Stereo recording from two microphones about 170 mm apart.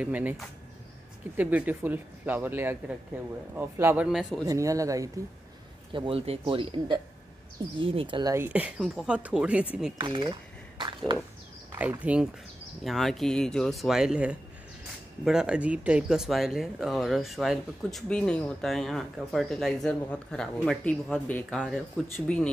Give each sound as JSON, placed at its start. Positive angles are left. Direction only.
{"t": 0.0, "sound": "speech", "side_deg": -10}
{"t": 4.5, "sound": "speech", "side_deg": -20}
{"t": 5.9, "sound": "speech", "side_deg": -35}
{"t": 8.4, "sound": "speech", "side_deg": -10}
{"t": 9.9, "sound": "speech", "side_deg": -30}
{"t": 11.8, "sound": "speech", "side_deg": -10}